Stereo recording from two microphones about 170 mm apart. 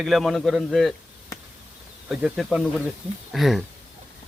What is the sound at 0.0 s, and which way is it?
Speech, centre (ahead or behind).